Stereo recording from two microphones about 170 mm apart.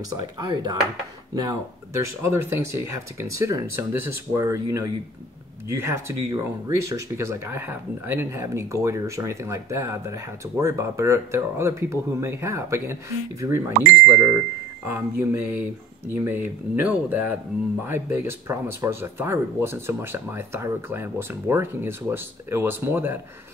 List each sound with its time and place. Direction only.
0.5 s speech: 25° right (ahead or behind)